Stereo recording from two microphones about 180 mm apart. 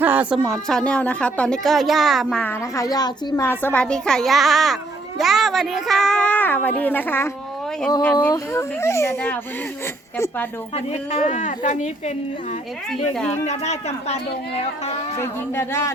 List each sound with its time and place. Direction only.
0.0 s a woman's voice: 10° right (ahead or behind); by 9.4 s 15° left (ahead or behind)
10.8 s a woman's voice: 35° left (ahead or behind)
13.4 s a woman's voice: 40° left (ahead or behind)
15.2 s speech: 15° left (ahead or behind)